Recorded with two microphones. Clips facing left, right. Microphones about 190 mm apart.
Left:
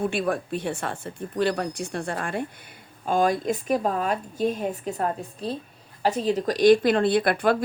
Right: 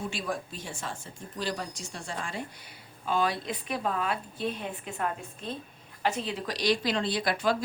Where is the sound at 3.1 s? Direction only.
45° left (ahead or behind).